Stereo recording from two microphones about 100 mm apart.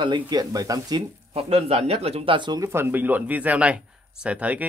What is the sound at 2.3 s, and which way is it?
Speech, 50° right (ahead or behind).